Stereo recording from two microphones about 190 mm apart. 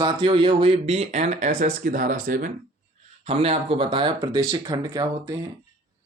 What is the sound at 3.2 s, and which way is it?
A man's voice, 30° right (ahead or behind).